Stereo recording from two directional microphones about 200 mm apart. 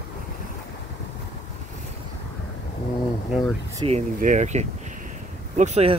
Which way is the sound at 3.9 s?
40° right (ahead or behind).